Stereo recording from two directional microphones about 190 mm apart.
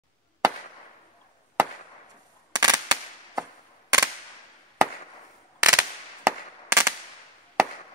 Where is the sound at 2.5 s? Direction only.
20° right (ahead or behind).